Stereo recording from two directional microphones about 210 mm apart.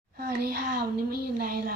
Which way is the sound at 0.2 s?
50° right (ahead or behind).